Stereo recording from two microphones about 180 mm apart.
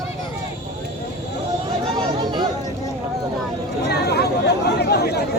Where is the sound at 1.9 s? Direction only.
25° right (ahead or behind).